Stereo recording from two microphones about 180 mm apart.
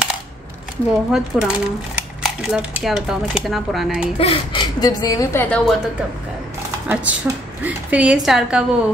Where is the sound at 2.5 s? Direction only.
5° right (ahead or behind).